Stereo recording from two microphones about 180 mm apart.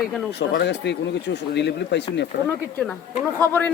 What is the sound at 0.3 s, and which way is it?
Speech, 70° left (ahead or behind).